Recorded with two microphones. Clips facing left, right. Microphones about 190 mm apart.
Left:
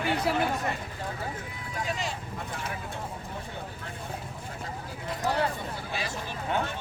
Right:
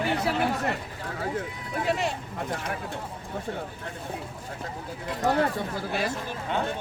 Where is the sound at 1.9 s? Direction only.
60° right (ahead or behind).